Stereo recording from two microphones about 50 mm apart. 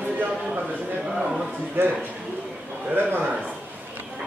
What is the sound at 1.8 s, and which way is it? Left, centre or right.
Speech, right.